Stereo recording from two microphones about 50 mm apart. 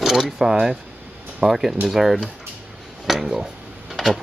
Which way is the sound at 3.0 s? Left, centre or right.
Centre.